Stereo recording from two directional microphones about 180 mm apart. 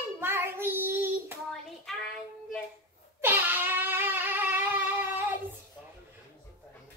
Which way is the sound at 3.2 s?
10° right (ahead or behind).